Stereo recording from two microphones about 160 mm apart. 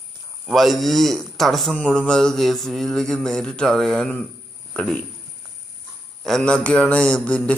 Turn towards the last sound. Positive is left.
turn(degrees=5)  # may be behind; listen again after turning